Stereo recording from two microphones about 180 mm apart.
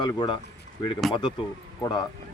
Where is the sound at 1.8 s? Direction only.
25° left (ahead or behind).